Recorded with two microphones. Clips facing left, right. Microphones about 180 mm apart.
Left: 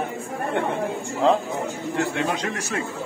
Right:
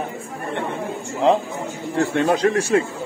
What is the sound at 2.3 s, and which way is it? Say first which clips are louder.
Speech: right 10 dB; 35° right (ahead or behind).